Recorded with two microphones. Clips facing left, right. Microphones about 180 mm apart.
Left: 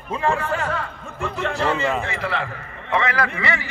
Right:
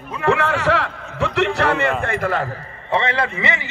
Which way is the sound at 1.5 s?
65° right (ahead or behind).